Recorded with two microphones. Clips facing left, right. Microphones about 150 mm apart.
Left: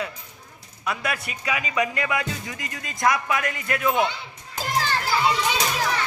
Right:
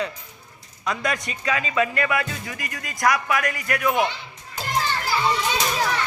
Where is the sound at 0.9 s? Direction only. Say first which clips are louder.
Right 2 dB; 5° left (ahead or behind); by 4.0 s 25° left (ahead or behind).